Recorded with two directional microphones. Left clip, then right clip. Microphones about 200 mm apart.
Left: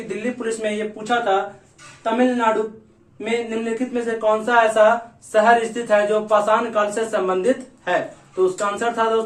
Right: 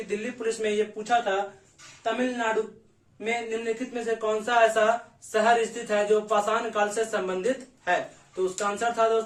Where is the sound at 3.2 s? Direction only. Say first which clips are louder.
Left 6 dB; 15° right (ahead or behind).